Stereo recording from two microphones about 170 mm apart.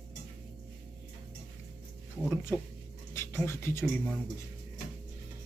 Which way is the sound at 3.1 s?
15° left (ahead or behind).